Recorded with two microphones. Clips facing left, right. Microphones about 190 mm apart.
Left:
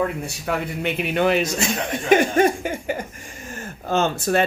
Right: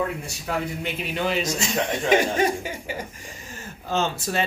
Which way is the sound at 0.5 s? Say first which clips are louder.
Left 3 dB; 65° left (ahead or behind).